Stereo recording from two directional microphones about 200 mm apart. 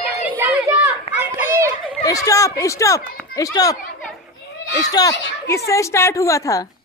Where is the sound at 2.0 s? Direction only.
15° left (ahead or behind).